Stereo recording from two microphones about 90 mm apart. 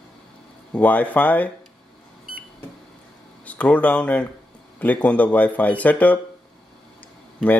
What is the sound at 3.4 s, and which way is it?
Speech, 15° left (ahead or behind).